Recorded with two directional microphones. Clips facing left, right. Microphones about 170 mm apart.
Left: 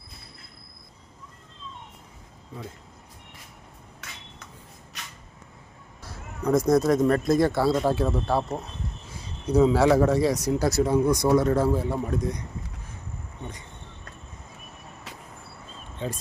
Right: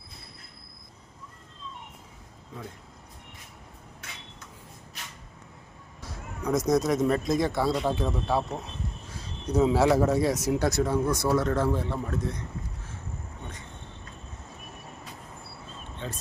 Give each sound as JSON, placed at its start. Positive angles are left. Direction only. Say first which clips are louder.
{"t": 6.7, "sound": "speech", "louder": "left 3 dB", "side_deg": 0}
{"t": 8.4, "sound": "speech", "louder": "left 2 dB", "side_deg": 20}
{"t": 9.1, "sound": "a man's voice", "louder": "left 4 dB", "side_deg": 0}
{"t": 10.8, "sound": "speech", "louder": "left 4 dB", "side_deg": 15}
{"t": 16.0, "sound": "speech", "louder": "left 6 dB", "side_deg": 15}